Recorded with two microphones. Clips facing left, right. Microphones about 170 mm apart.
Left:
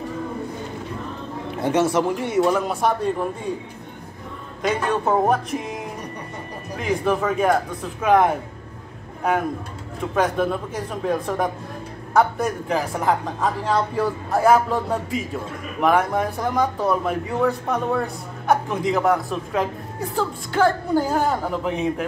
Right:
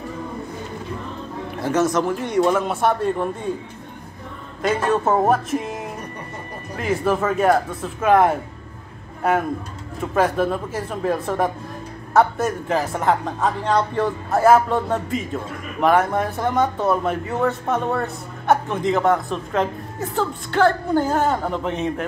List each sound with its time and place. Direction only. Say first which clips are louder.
1.6 s speech: even; 10° left (ahead or behind)
4.6 s speech: right 2 dB; centre (ahead or behind)
6.8 s speech: right 1 dB; 5° right (ahead or behind)
10.1 s speech: right 2 dB; centre (ahead or behind)